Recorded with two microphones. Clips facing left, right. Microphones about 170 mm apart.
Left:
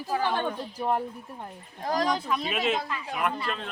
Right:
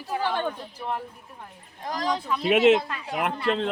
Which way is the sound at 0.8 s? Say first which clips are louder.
Left 5 dB; 40° left (ahead or behind).